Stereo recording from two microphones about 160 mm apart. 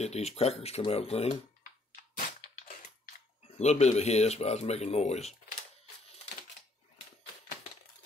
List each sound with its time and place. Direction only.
0.0 s speech: 40° left (ahead or behind)
2.1 s crushing: 55° left (ahead or behind)
3.5 s speech: 45° left (ahead or behind)